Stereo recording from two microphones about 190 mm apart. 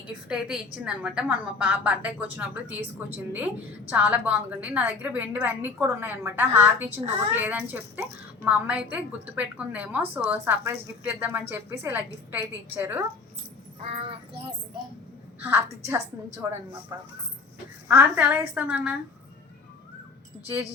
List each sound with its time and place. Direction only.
0.3 s a woman's voice: 5° right (ahead or behind)
13.8 s speech: 30° right (ahead or behind)
15.4 s a woman's voice: 10° right (ahead or behind)